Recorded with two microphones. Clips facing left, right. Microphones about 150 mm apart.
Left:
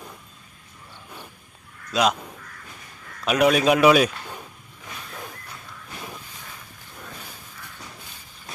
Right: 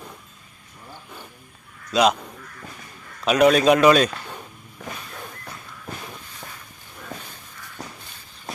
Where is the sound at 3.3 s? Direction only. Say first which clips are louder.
Right 3 dB; 5° left (ahead or behind).